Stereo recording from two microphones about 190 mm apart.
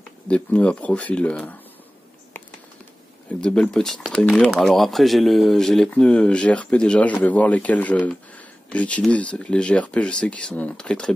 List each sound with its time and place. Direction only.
0.3 s speech: 5° left (ahead or behind)
3.3 s speech: 5° left (ahead or behind)